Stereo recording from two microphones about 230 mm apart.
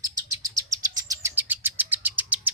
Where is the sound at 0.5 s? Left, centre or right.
Centre.